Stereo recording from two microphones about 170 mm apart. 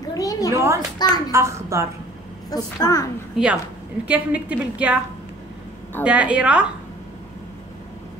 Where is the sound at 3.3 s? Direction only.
5° right (ahead or behind).